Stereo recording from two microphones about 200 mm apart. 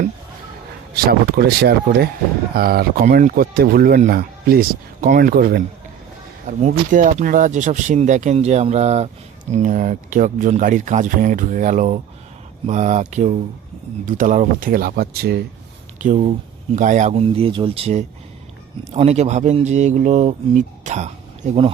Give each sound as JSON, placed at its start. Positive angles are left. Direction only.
{"t": 0.9, "sound": "speech", "side_deg": -50}
{"t": 16.0, "sound": "speech", "side_deg": -35}